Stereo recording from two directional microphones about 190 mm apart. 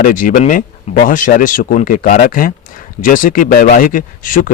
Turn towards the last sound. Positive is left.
turn(degrees=45)  # may be behind; listen again after turning